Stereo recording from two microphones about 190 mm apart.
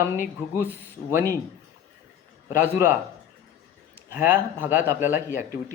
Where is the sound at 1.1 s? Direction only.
20° right (ahead or behind).